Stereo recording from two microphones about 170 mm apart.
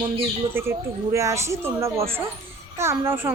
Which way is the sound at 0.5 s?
15° right (ahead or behind).